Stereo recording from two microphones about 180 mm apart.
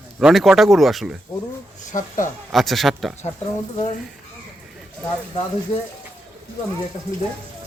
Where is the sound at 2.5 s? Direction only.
Centre (ahead or behind).